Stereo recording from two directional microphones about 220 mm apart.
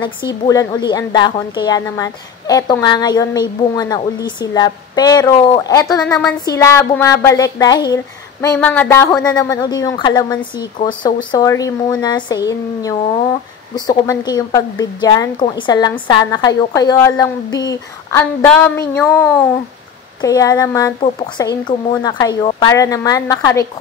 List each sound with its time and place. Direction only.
0.0 s a woman's voice: 20° left (ahead or behind)
20.2 s a woman's voice: 15° left (ahead or behind)